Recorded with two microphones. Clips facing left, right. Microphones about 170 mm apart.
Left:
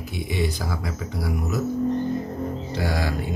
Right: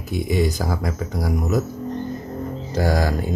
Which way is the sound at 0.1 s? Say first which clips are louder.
Right 6 dB; 40° right (ahead or behind).